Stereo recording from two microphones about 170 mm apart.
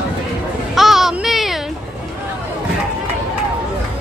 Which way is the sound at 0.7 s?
Centre (ahead or behind).